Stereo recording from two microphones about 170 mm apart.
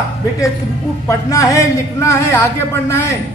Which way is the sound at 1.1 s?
20° left (ahead or behind).